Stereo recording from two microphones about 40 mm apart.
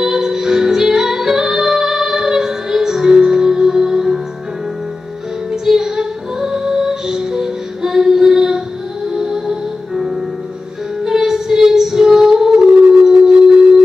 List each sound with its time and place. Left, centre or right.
0.0 s music: centre
5.8 s music: centre
11.1 s female singing: centre
13.1 s music: right